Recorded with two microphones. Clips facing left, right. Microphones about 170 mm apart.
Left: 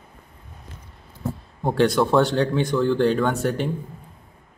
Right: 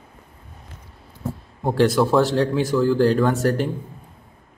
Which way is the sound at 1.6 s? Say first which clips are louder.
Right 1 dB; centre (ahead or behind).